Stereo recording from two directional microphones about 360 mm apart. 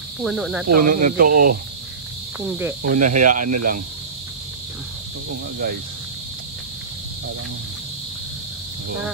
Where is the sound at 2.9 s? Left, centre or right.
Right.